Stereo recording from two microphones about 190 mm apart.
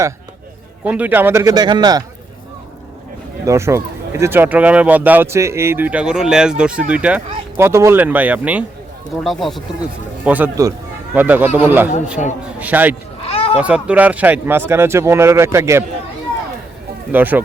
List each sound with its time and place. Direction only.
0.9 s speech: 10° right (ahead or behind)
3.4 s speech: 15° right (ahead or behind)
13.2 s a sound: 30° left (ahead or behind)
13.6 s speech: 5° right (ahead or behind)
17.1 s speech: 10° right (ahead or behind)